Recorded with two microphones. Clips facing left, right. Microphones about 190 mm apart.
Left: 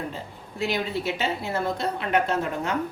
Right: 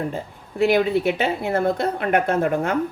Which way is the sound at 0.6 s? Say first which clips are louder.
Right 9 dB; 60° right (ahead or behind).